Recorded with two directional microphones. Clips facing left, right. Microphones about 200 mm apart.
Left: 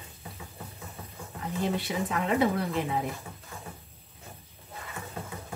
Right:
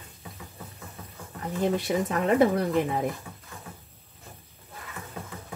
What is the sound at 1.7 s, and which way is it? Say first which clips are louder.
Speech: right 4 dB; 40° right (ahead or behind).